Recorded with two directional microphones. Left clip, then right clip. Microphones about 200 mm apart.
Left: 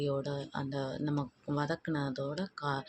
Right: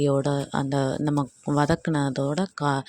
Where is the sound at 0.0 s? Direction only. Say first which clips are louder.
Right 11 dB; 45° right (ahead or behind).